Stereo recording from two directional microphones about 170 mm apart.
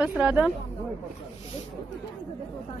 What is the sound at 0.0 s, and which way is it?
Speech, 10° right (ahead or behind).